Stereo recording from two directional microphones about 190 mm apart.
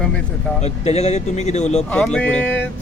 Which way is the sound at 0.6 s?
35° left (ahead or behind).